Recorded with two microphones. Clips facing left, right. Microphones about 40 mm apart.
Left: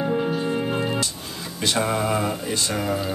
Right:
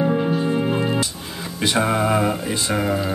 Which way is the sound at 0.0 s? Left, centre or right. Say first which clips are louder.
Right 3 dB; centre.